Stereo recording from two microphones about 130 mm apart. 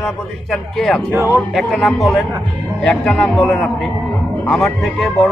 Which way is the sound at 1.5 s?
Centre (ahead or behind).